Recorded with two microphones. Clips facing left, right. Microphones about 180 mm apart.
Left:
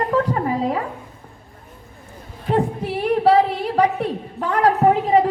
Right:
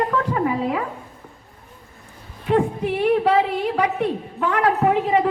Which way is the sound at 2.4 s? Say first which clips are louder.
Right 1 dB; 35° left (ahead or behind).